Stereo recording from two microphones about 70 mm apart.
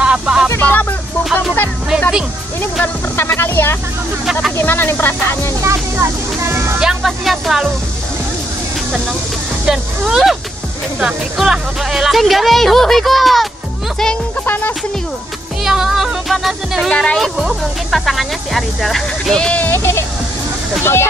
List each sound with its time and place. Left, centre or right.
0.0 s music: centre
0.6 s speech: left
2.8 s speech: left
4.3 s speech: centre
4.6 s speech: left
5.6 s speech: right
6.8 s speech: centre
9.7 s speech: centre
14.4 s speech: left
15.6 s speech: centre
16.9 s speech: centre
17.2 s speech: centre
19.6 s speech: left